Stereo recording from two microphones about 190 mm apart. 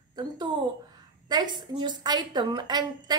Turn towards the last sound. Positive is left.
turn(degrees=-20)  # may be behind; listen again after turning